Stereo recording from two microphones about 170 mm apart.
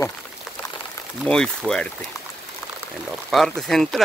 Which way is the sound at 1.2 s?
5° left (ahead or behind).